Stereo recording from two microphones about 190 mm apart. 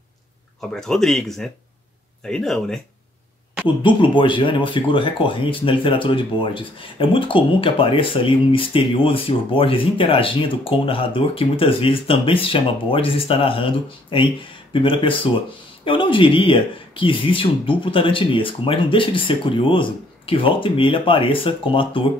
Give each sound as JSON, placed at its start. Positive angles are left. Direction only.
{"t": 0.6, "sound": "speech", "side_deg": 0}
{"t": 3.6, "sound": "speech", "side_deg": 25}